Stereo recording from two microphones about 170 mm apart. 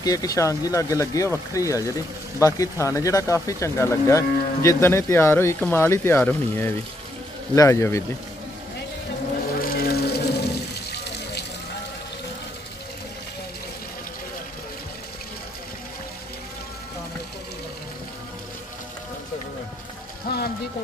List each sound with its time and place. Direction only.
0.0 s speech: 20° left (ahead or behind)
9.6 s music: 60° left (ahead or behind)
20.3 s a sound: 60° left (ahead or behind)